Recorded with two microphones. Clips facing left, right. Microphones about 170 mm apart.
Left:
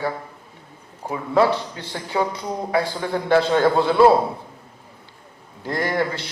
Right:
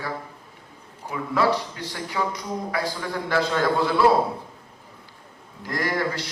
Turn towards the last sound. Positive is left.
turn(degrees=25)  # may be behind; listen again after turning